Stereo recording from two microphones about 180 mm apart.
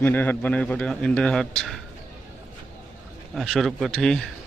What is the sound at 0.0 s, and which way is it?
A man's voice, 10° left (ahead or behind).